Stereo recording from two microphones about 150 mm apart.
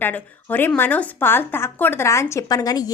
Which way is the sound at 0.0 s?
10° left (ahead or behind).